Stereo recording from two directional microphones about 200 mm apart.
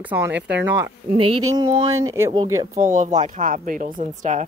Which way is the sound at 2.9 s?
40° right (ahead or behind).